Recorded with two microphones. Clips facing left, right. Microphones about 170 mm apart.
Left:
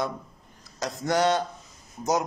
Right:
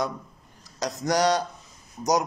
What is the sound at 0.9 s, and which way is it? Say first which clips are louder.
Speech: right 1 dB; 40° right (ahead or behind).